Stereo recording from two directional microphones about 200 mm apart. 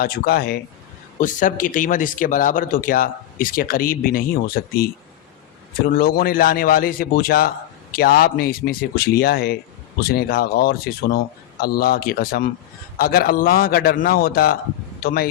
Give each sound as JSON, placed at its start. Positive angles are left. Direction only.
{"t": 0.0, "sound": "speech", "side_deg": 50}